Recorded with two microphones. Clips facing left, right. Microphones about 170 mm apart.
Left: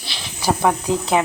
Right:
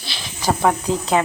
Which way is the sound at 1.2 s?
10° left (ahead or behind).